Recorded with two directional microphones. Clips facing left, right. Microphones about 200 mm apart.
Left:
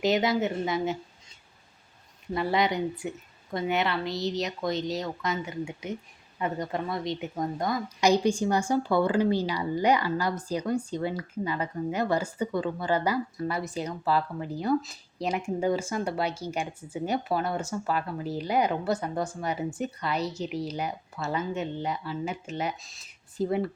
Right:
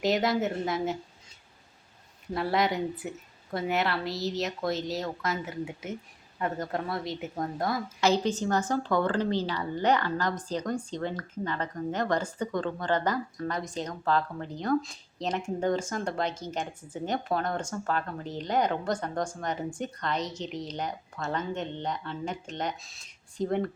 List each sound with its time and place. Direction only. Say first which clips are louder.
0.0 s a woman's voice: left 1 dB; centre (ahead or behind)
2.3 s a woman's voice: left 1 dB; centre (ahead or behind)
8.0 s speech: left 3 dB; 15° left (ahead or behind)